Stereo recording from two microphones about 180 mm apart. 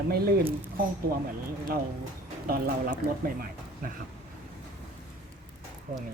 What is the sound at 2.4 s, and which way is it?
Speech, 55° right (ahead or behind).